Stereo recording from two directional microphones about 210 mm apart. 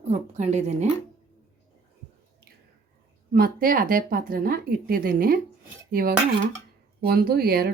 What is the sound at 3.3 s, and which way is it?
Speech, 45° right (ahead or behind).